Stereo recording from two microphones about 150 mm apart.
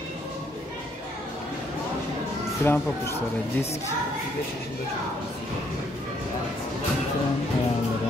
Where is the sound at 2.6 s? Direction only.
15° left (ahead or behind).